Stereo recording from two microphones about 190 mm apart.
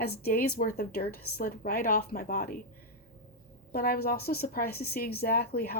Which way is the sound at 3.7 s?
50° left (ahead or behind).